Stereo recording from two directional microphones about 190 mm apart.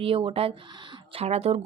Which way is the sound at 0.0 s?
30° right (ahead or behind).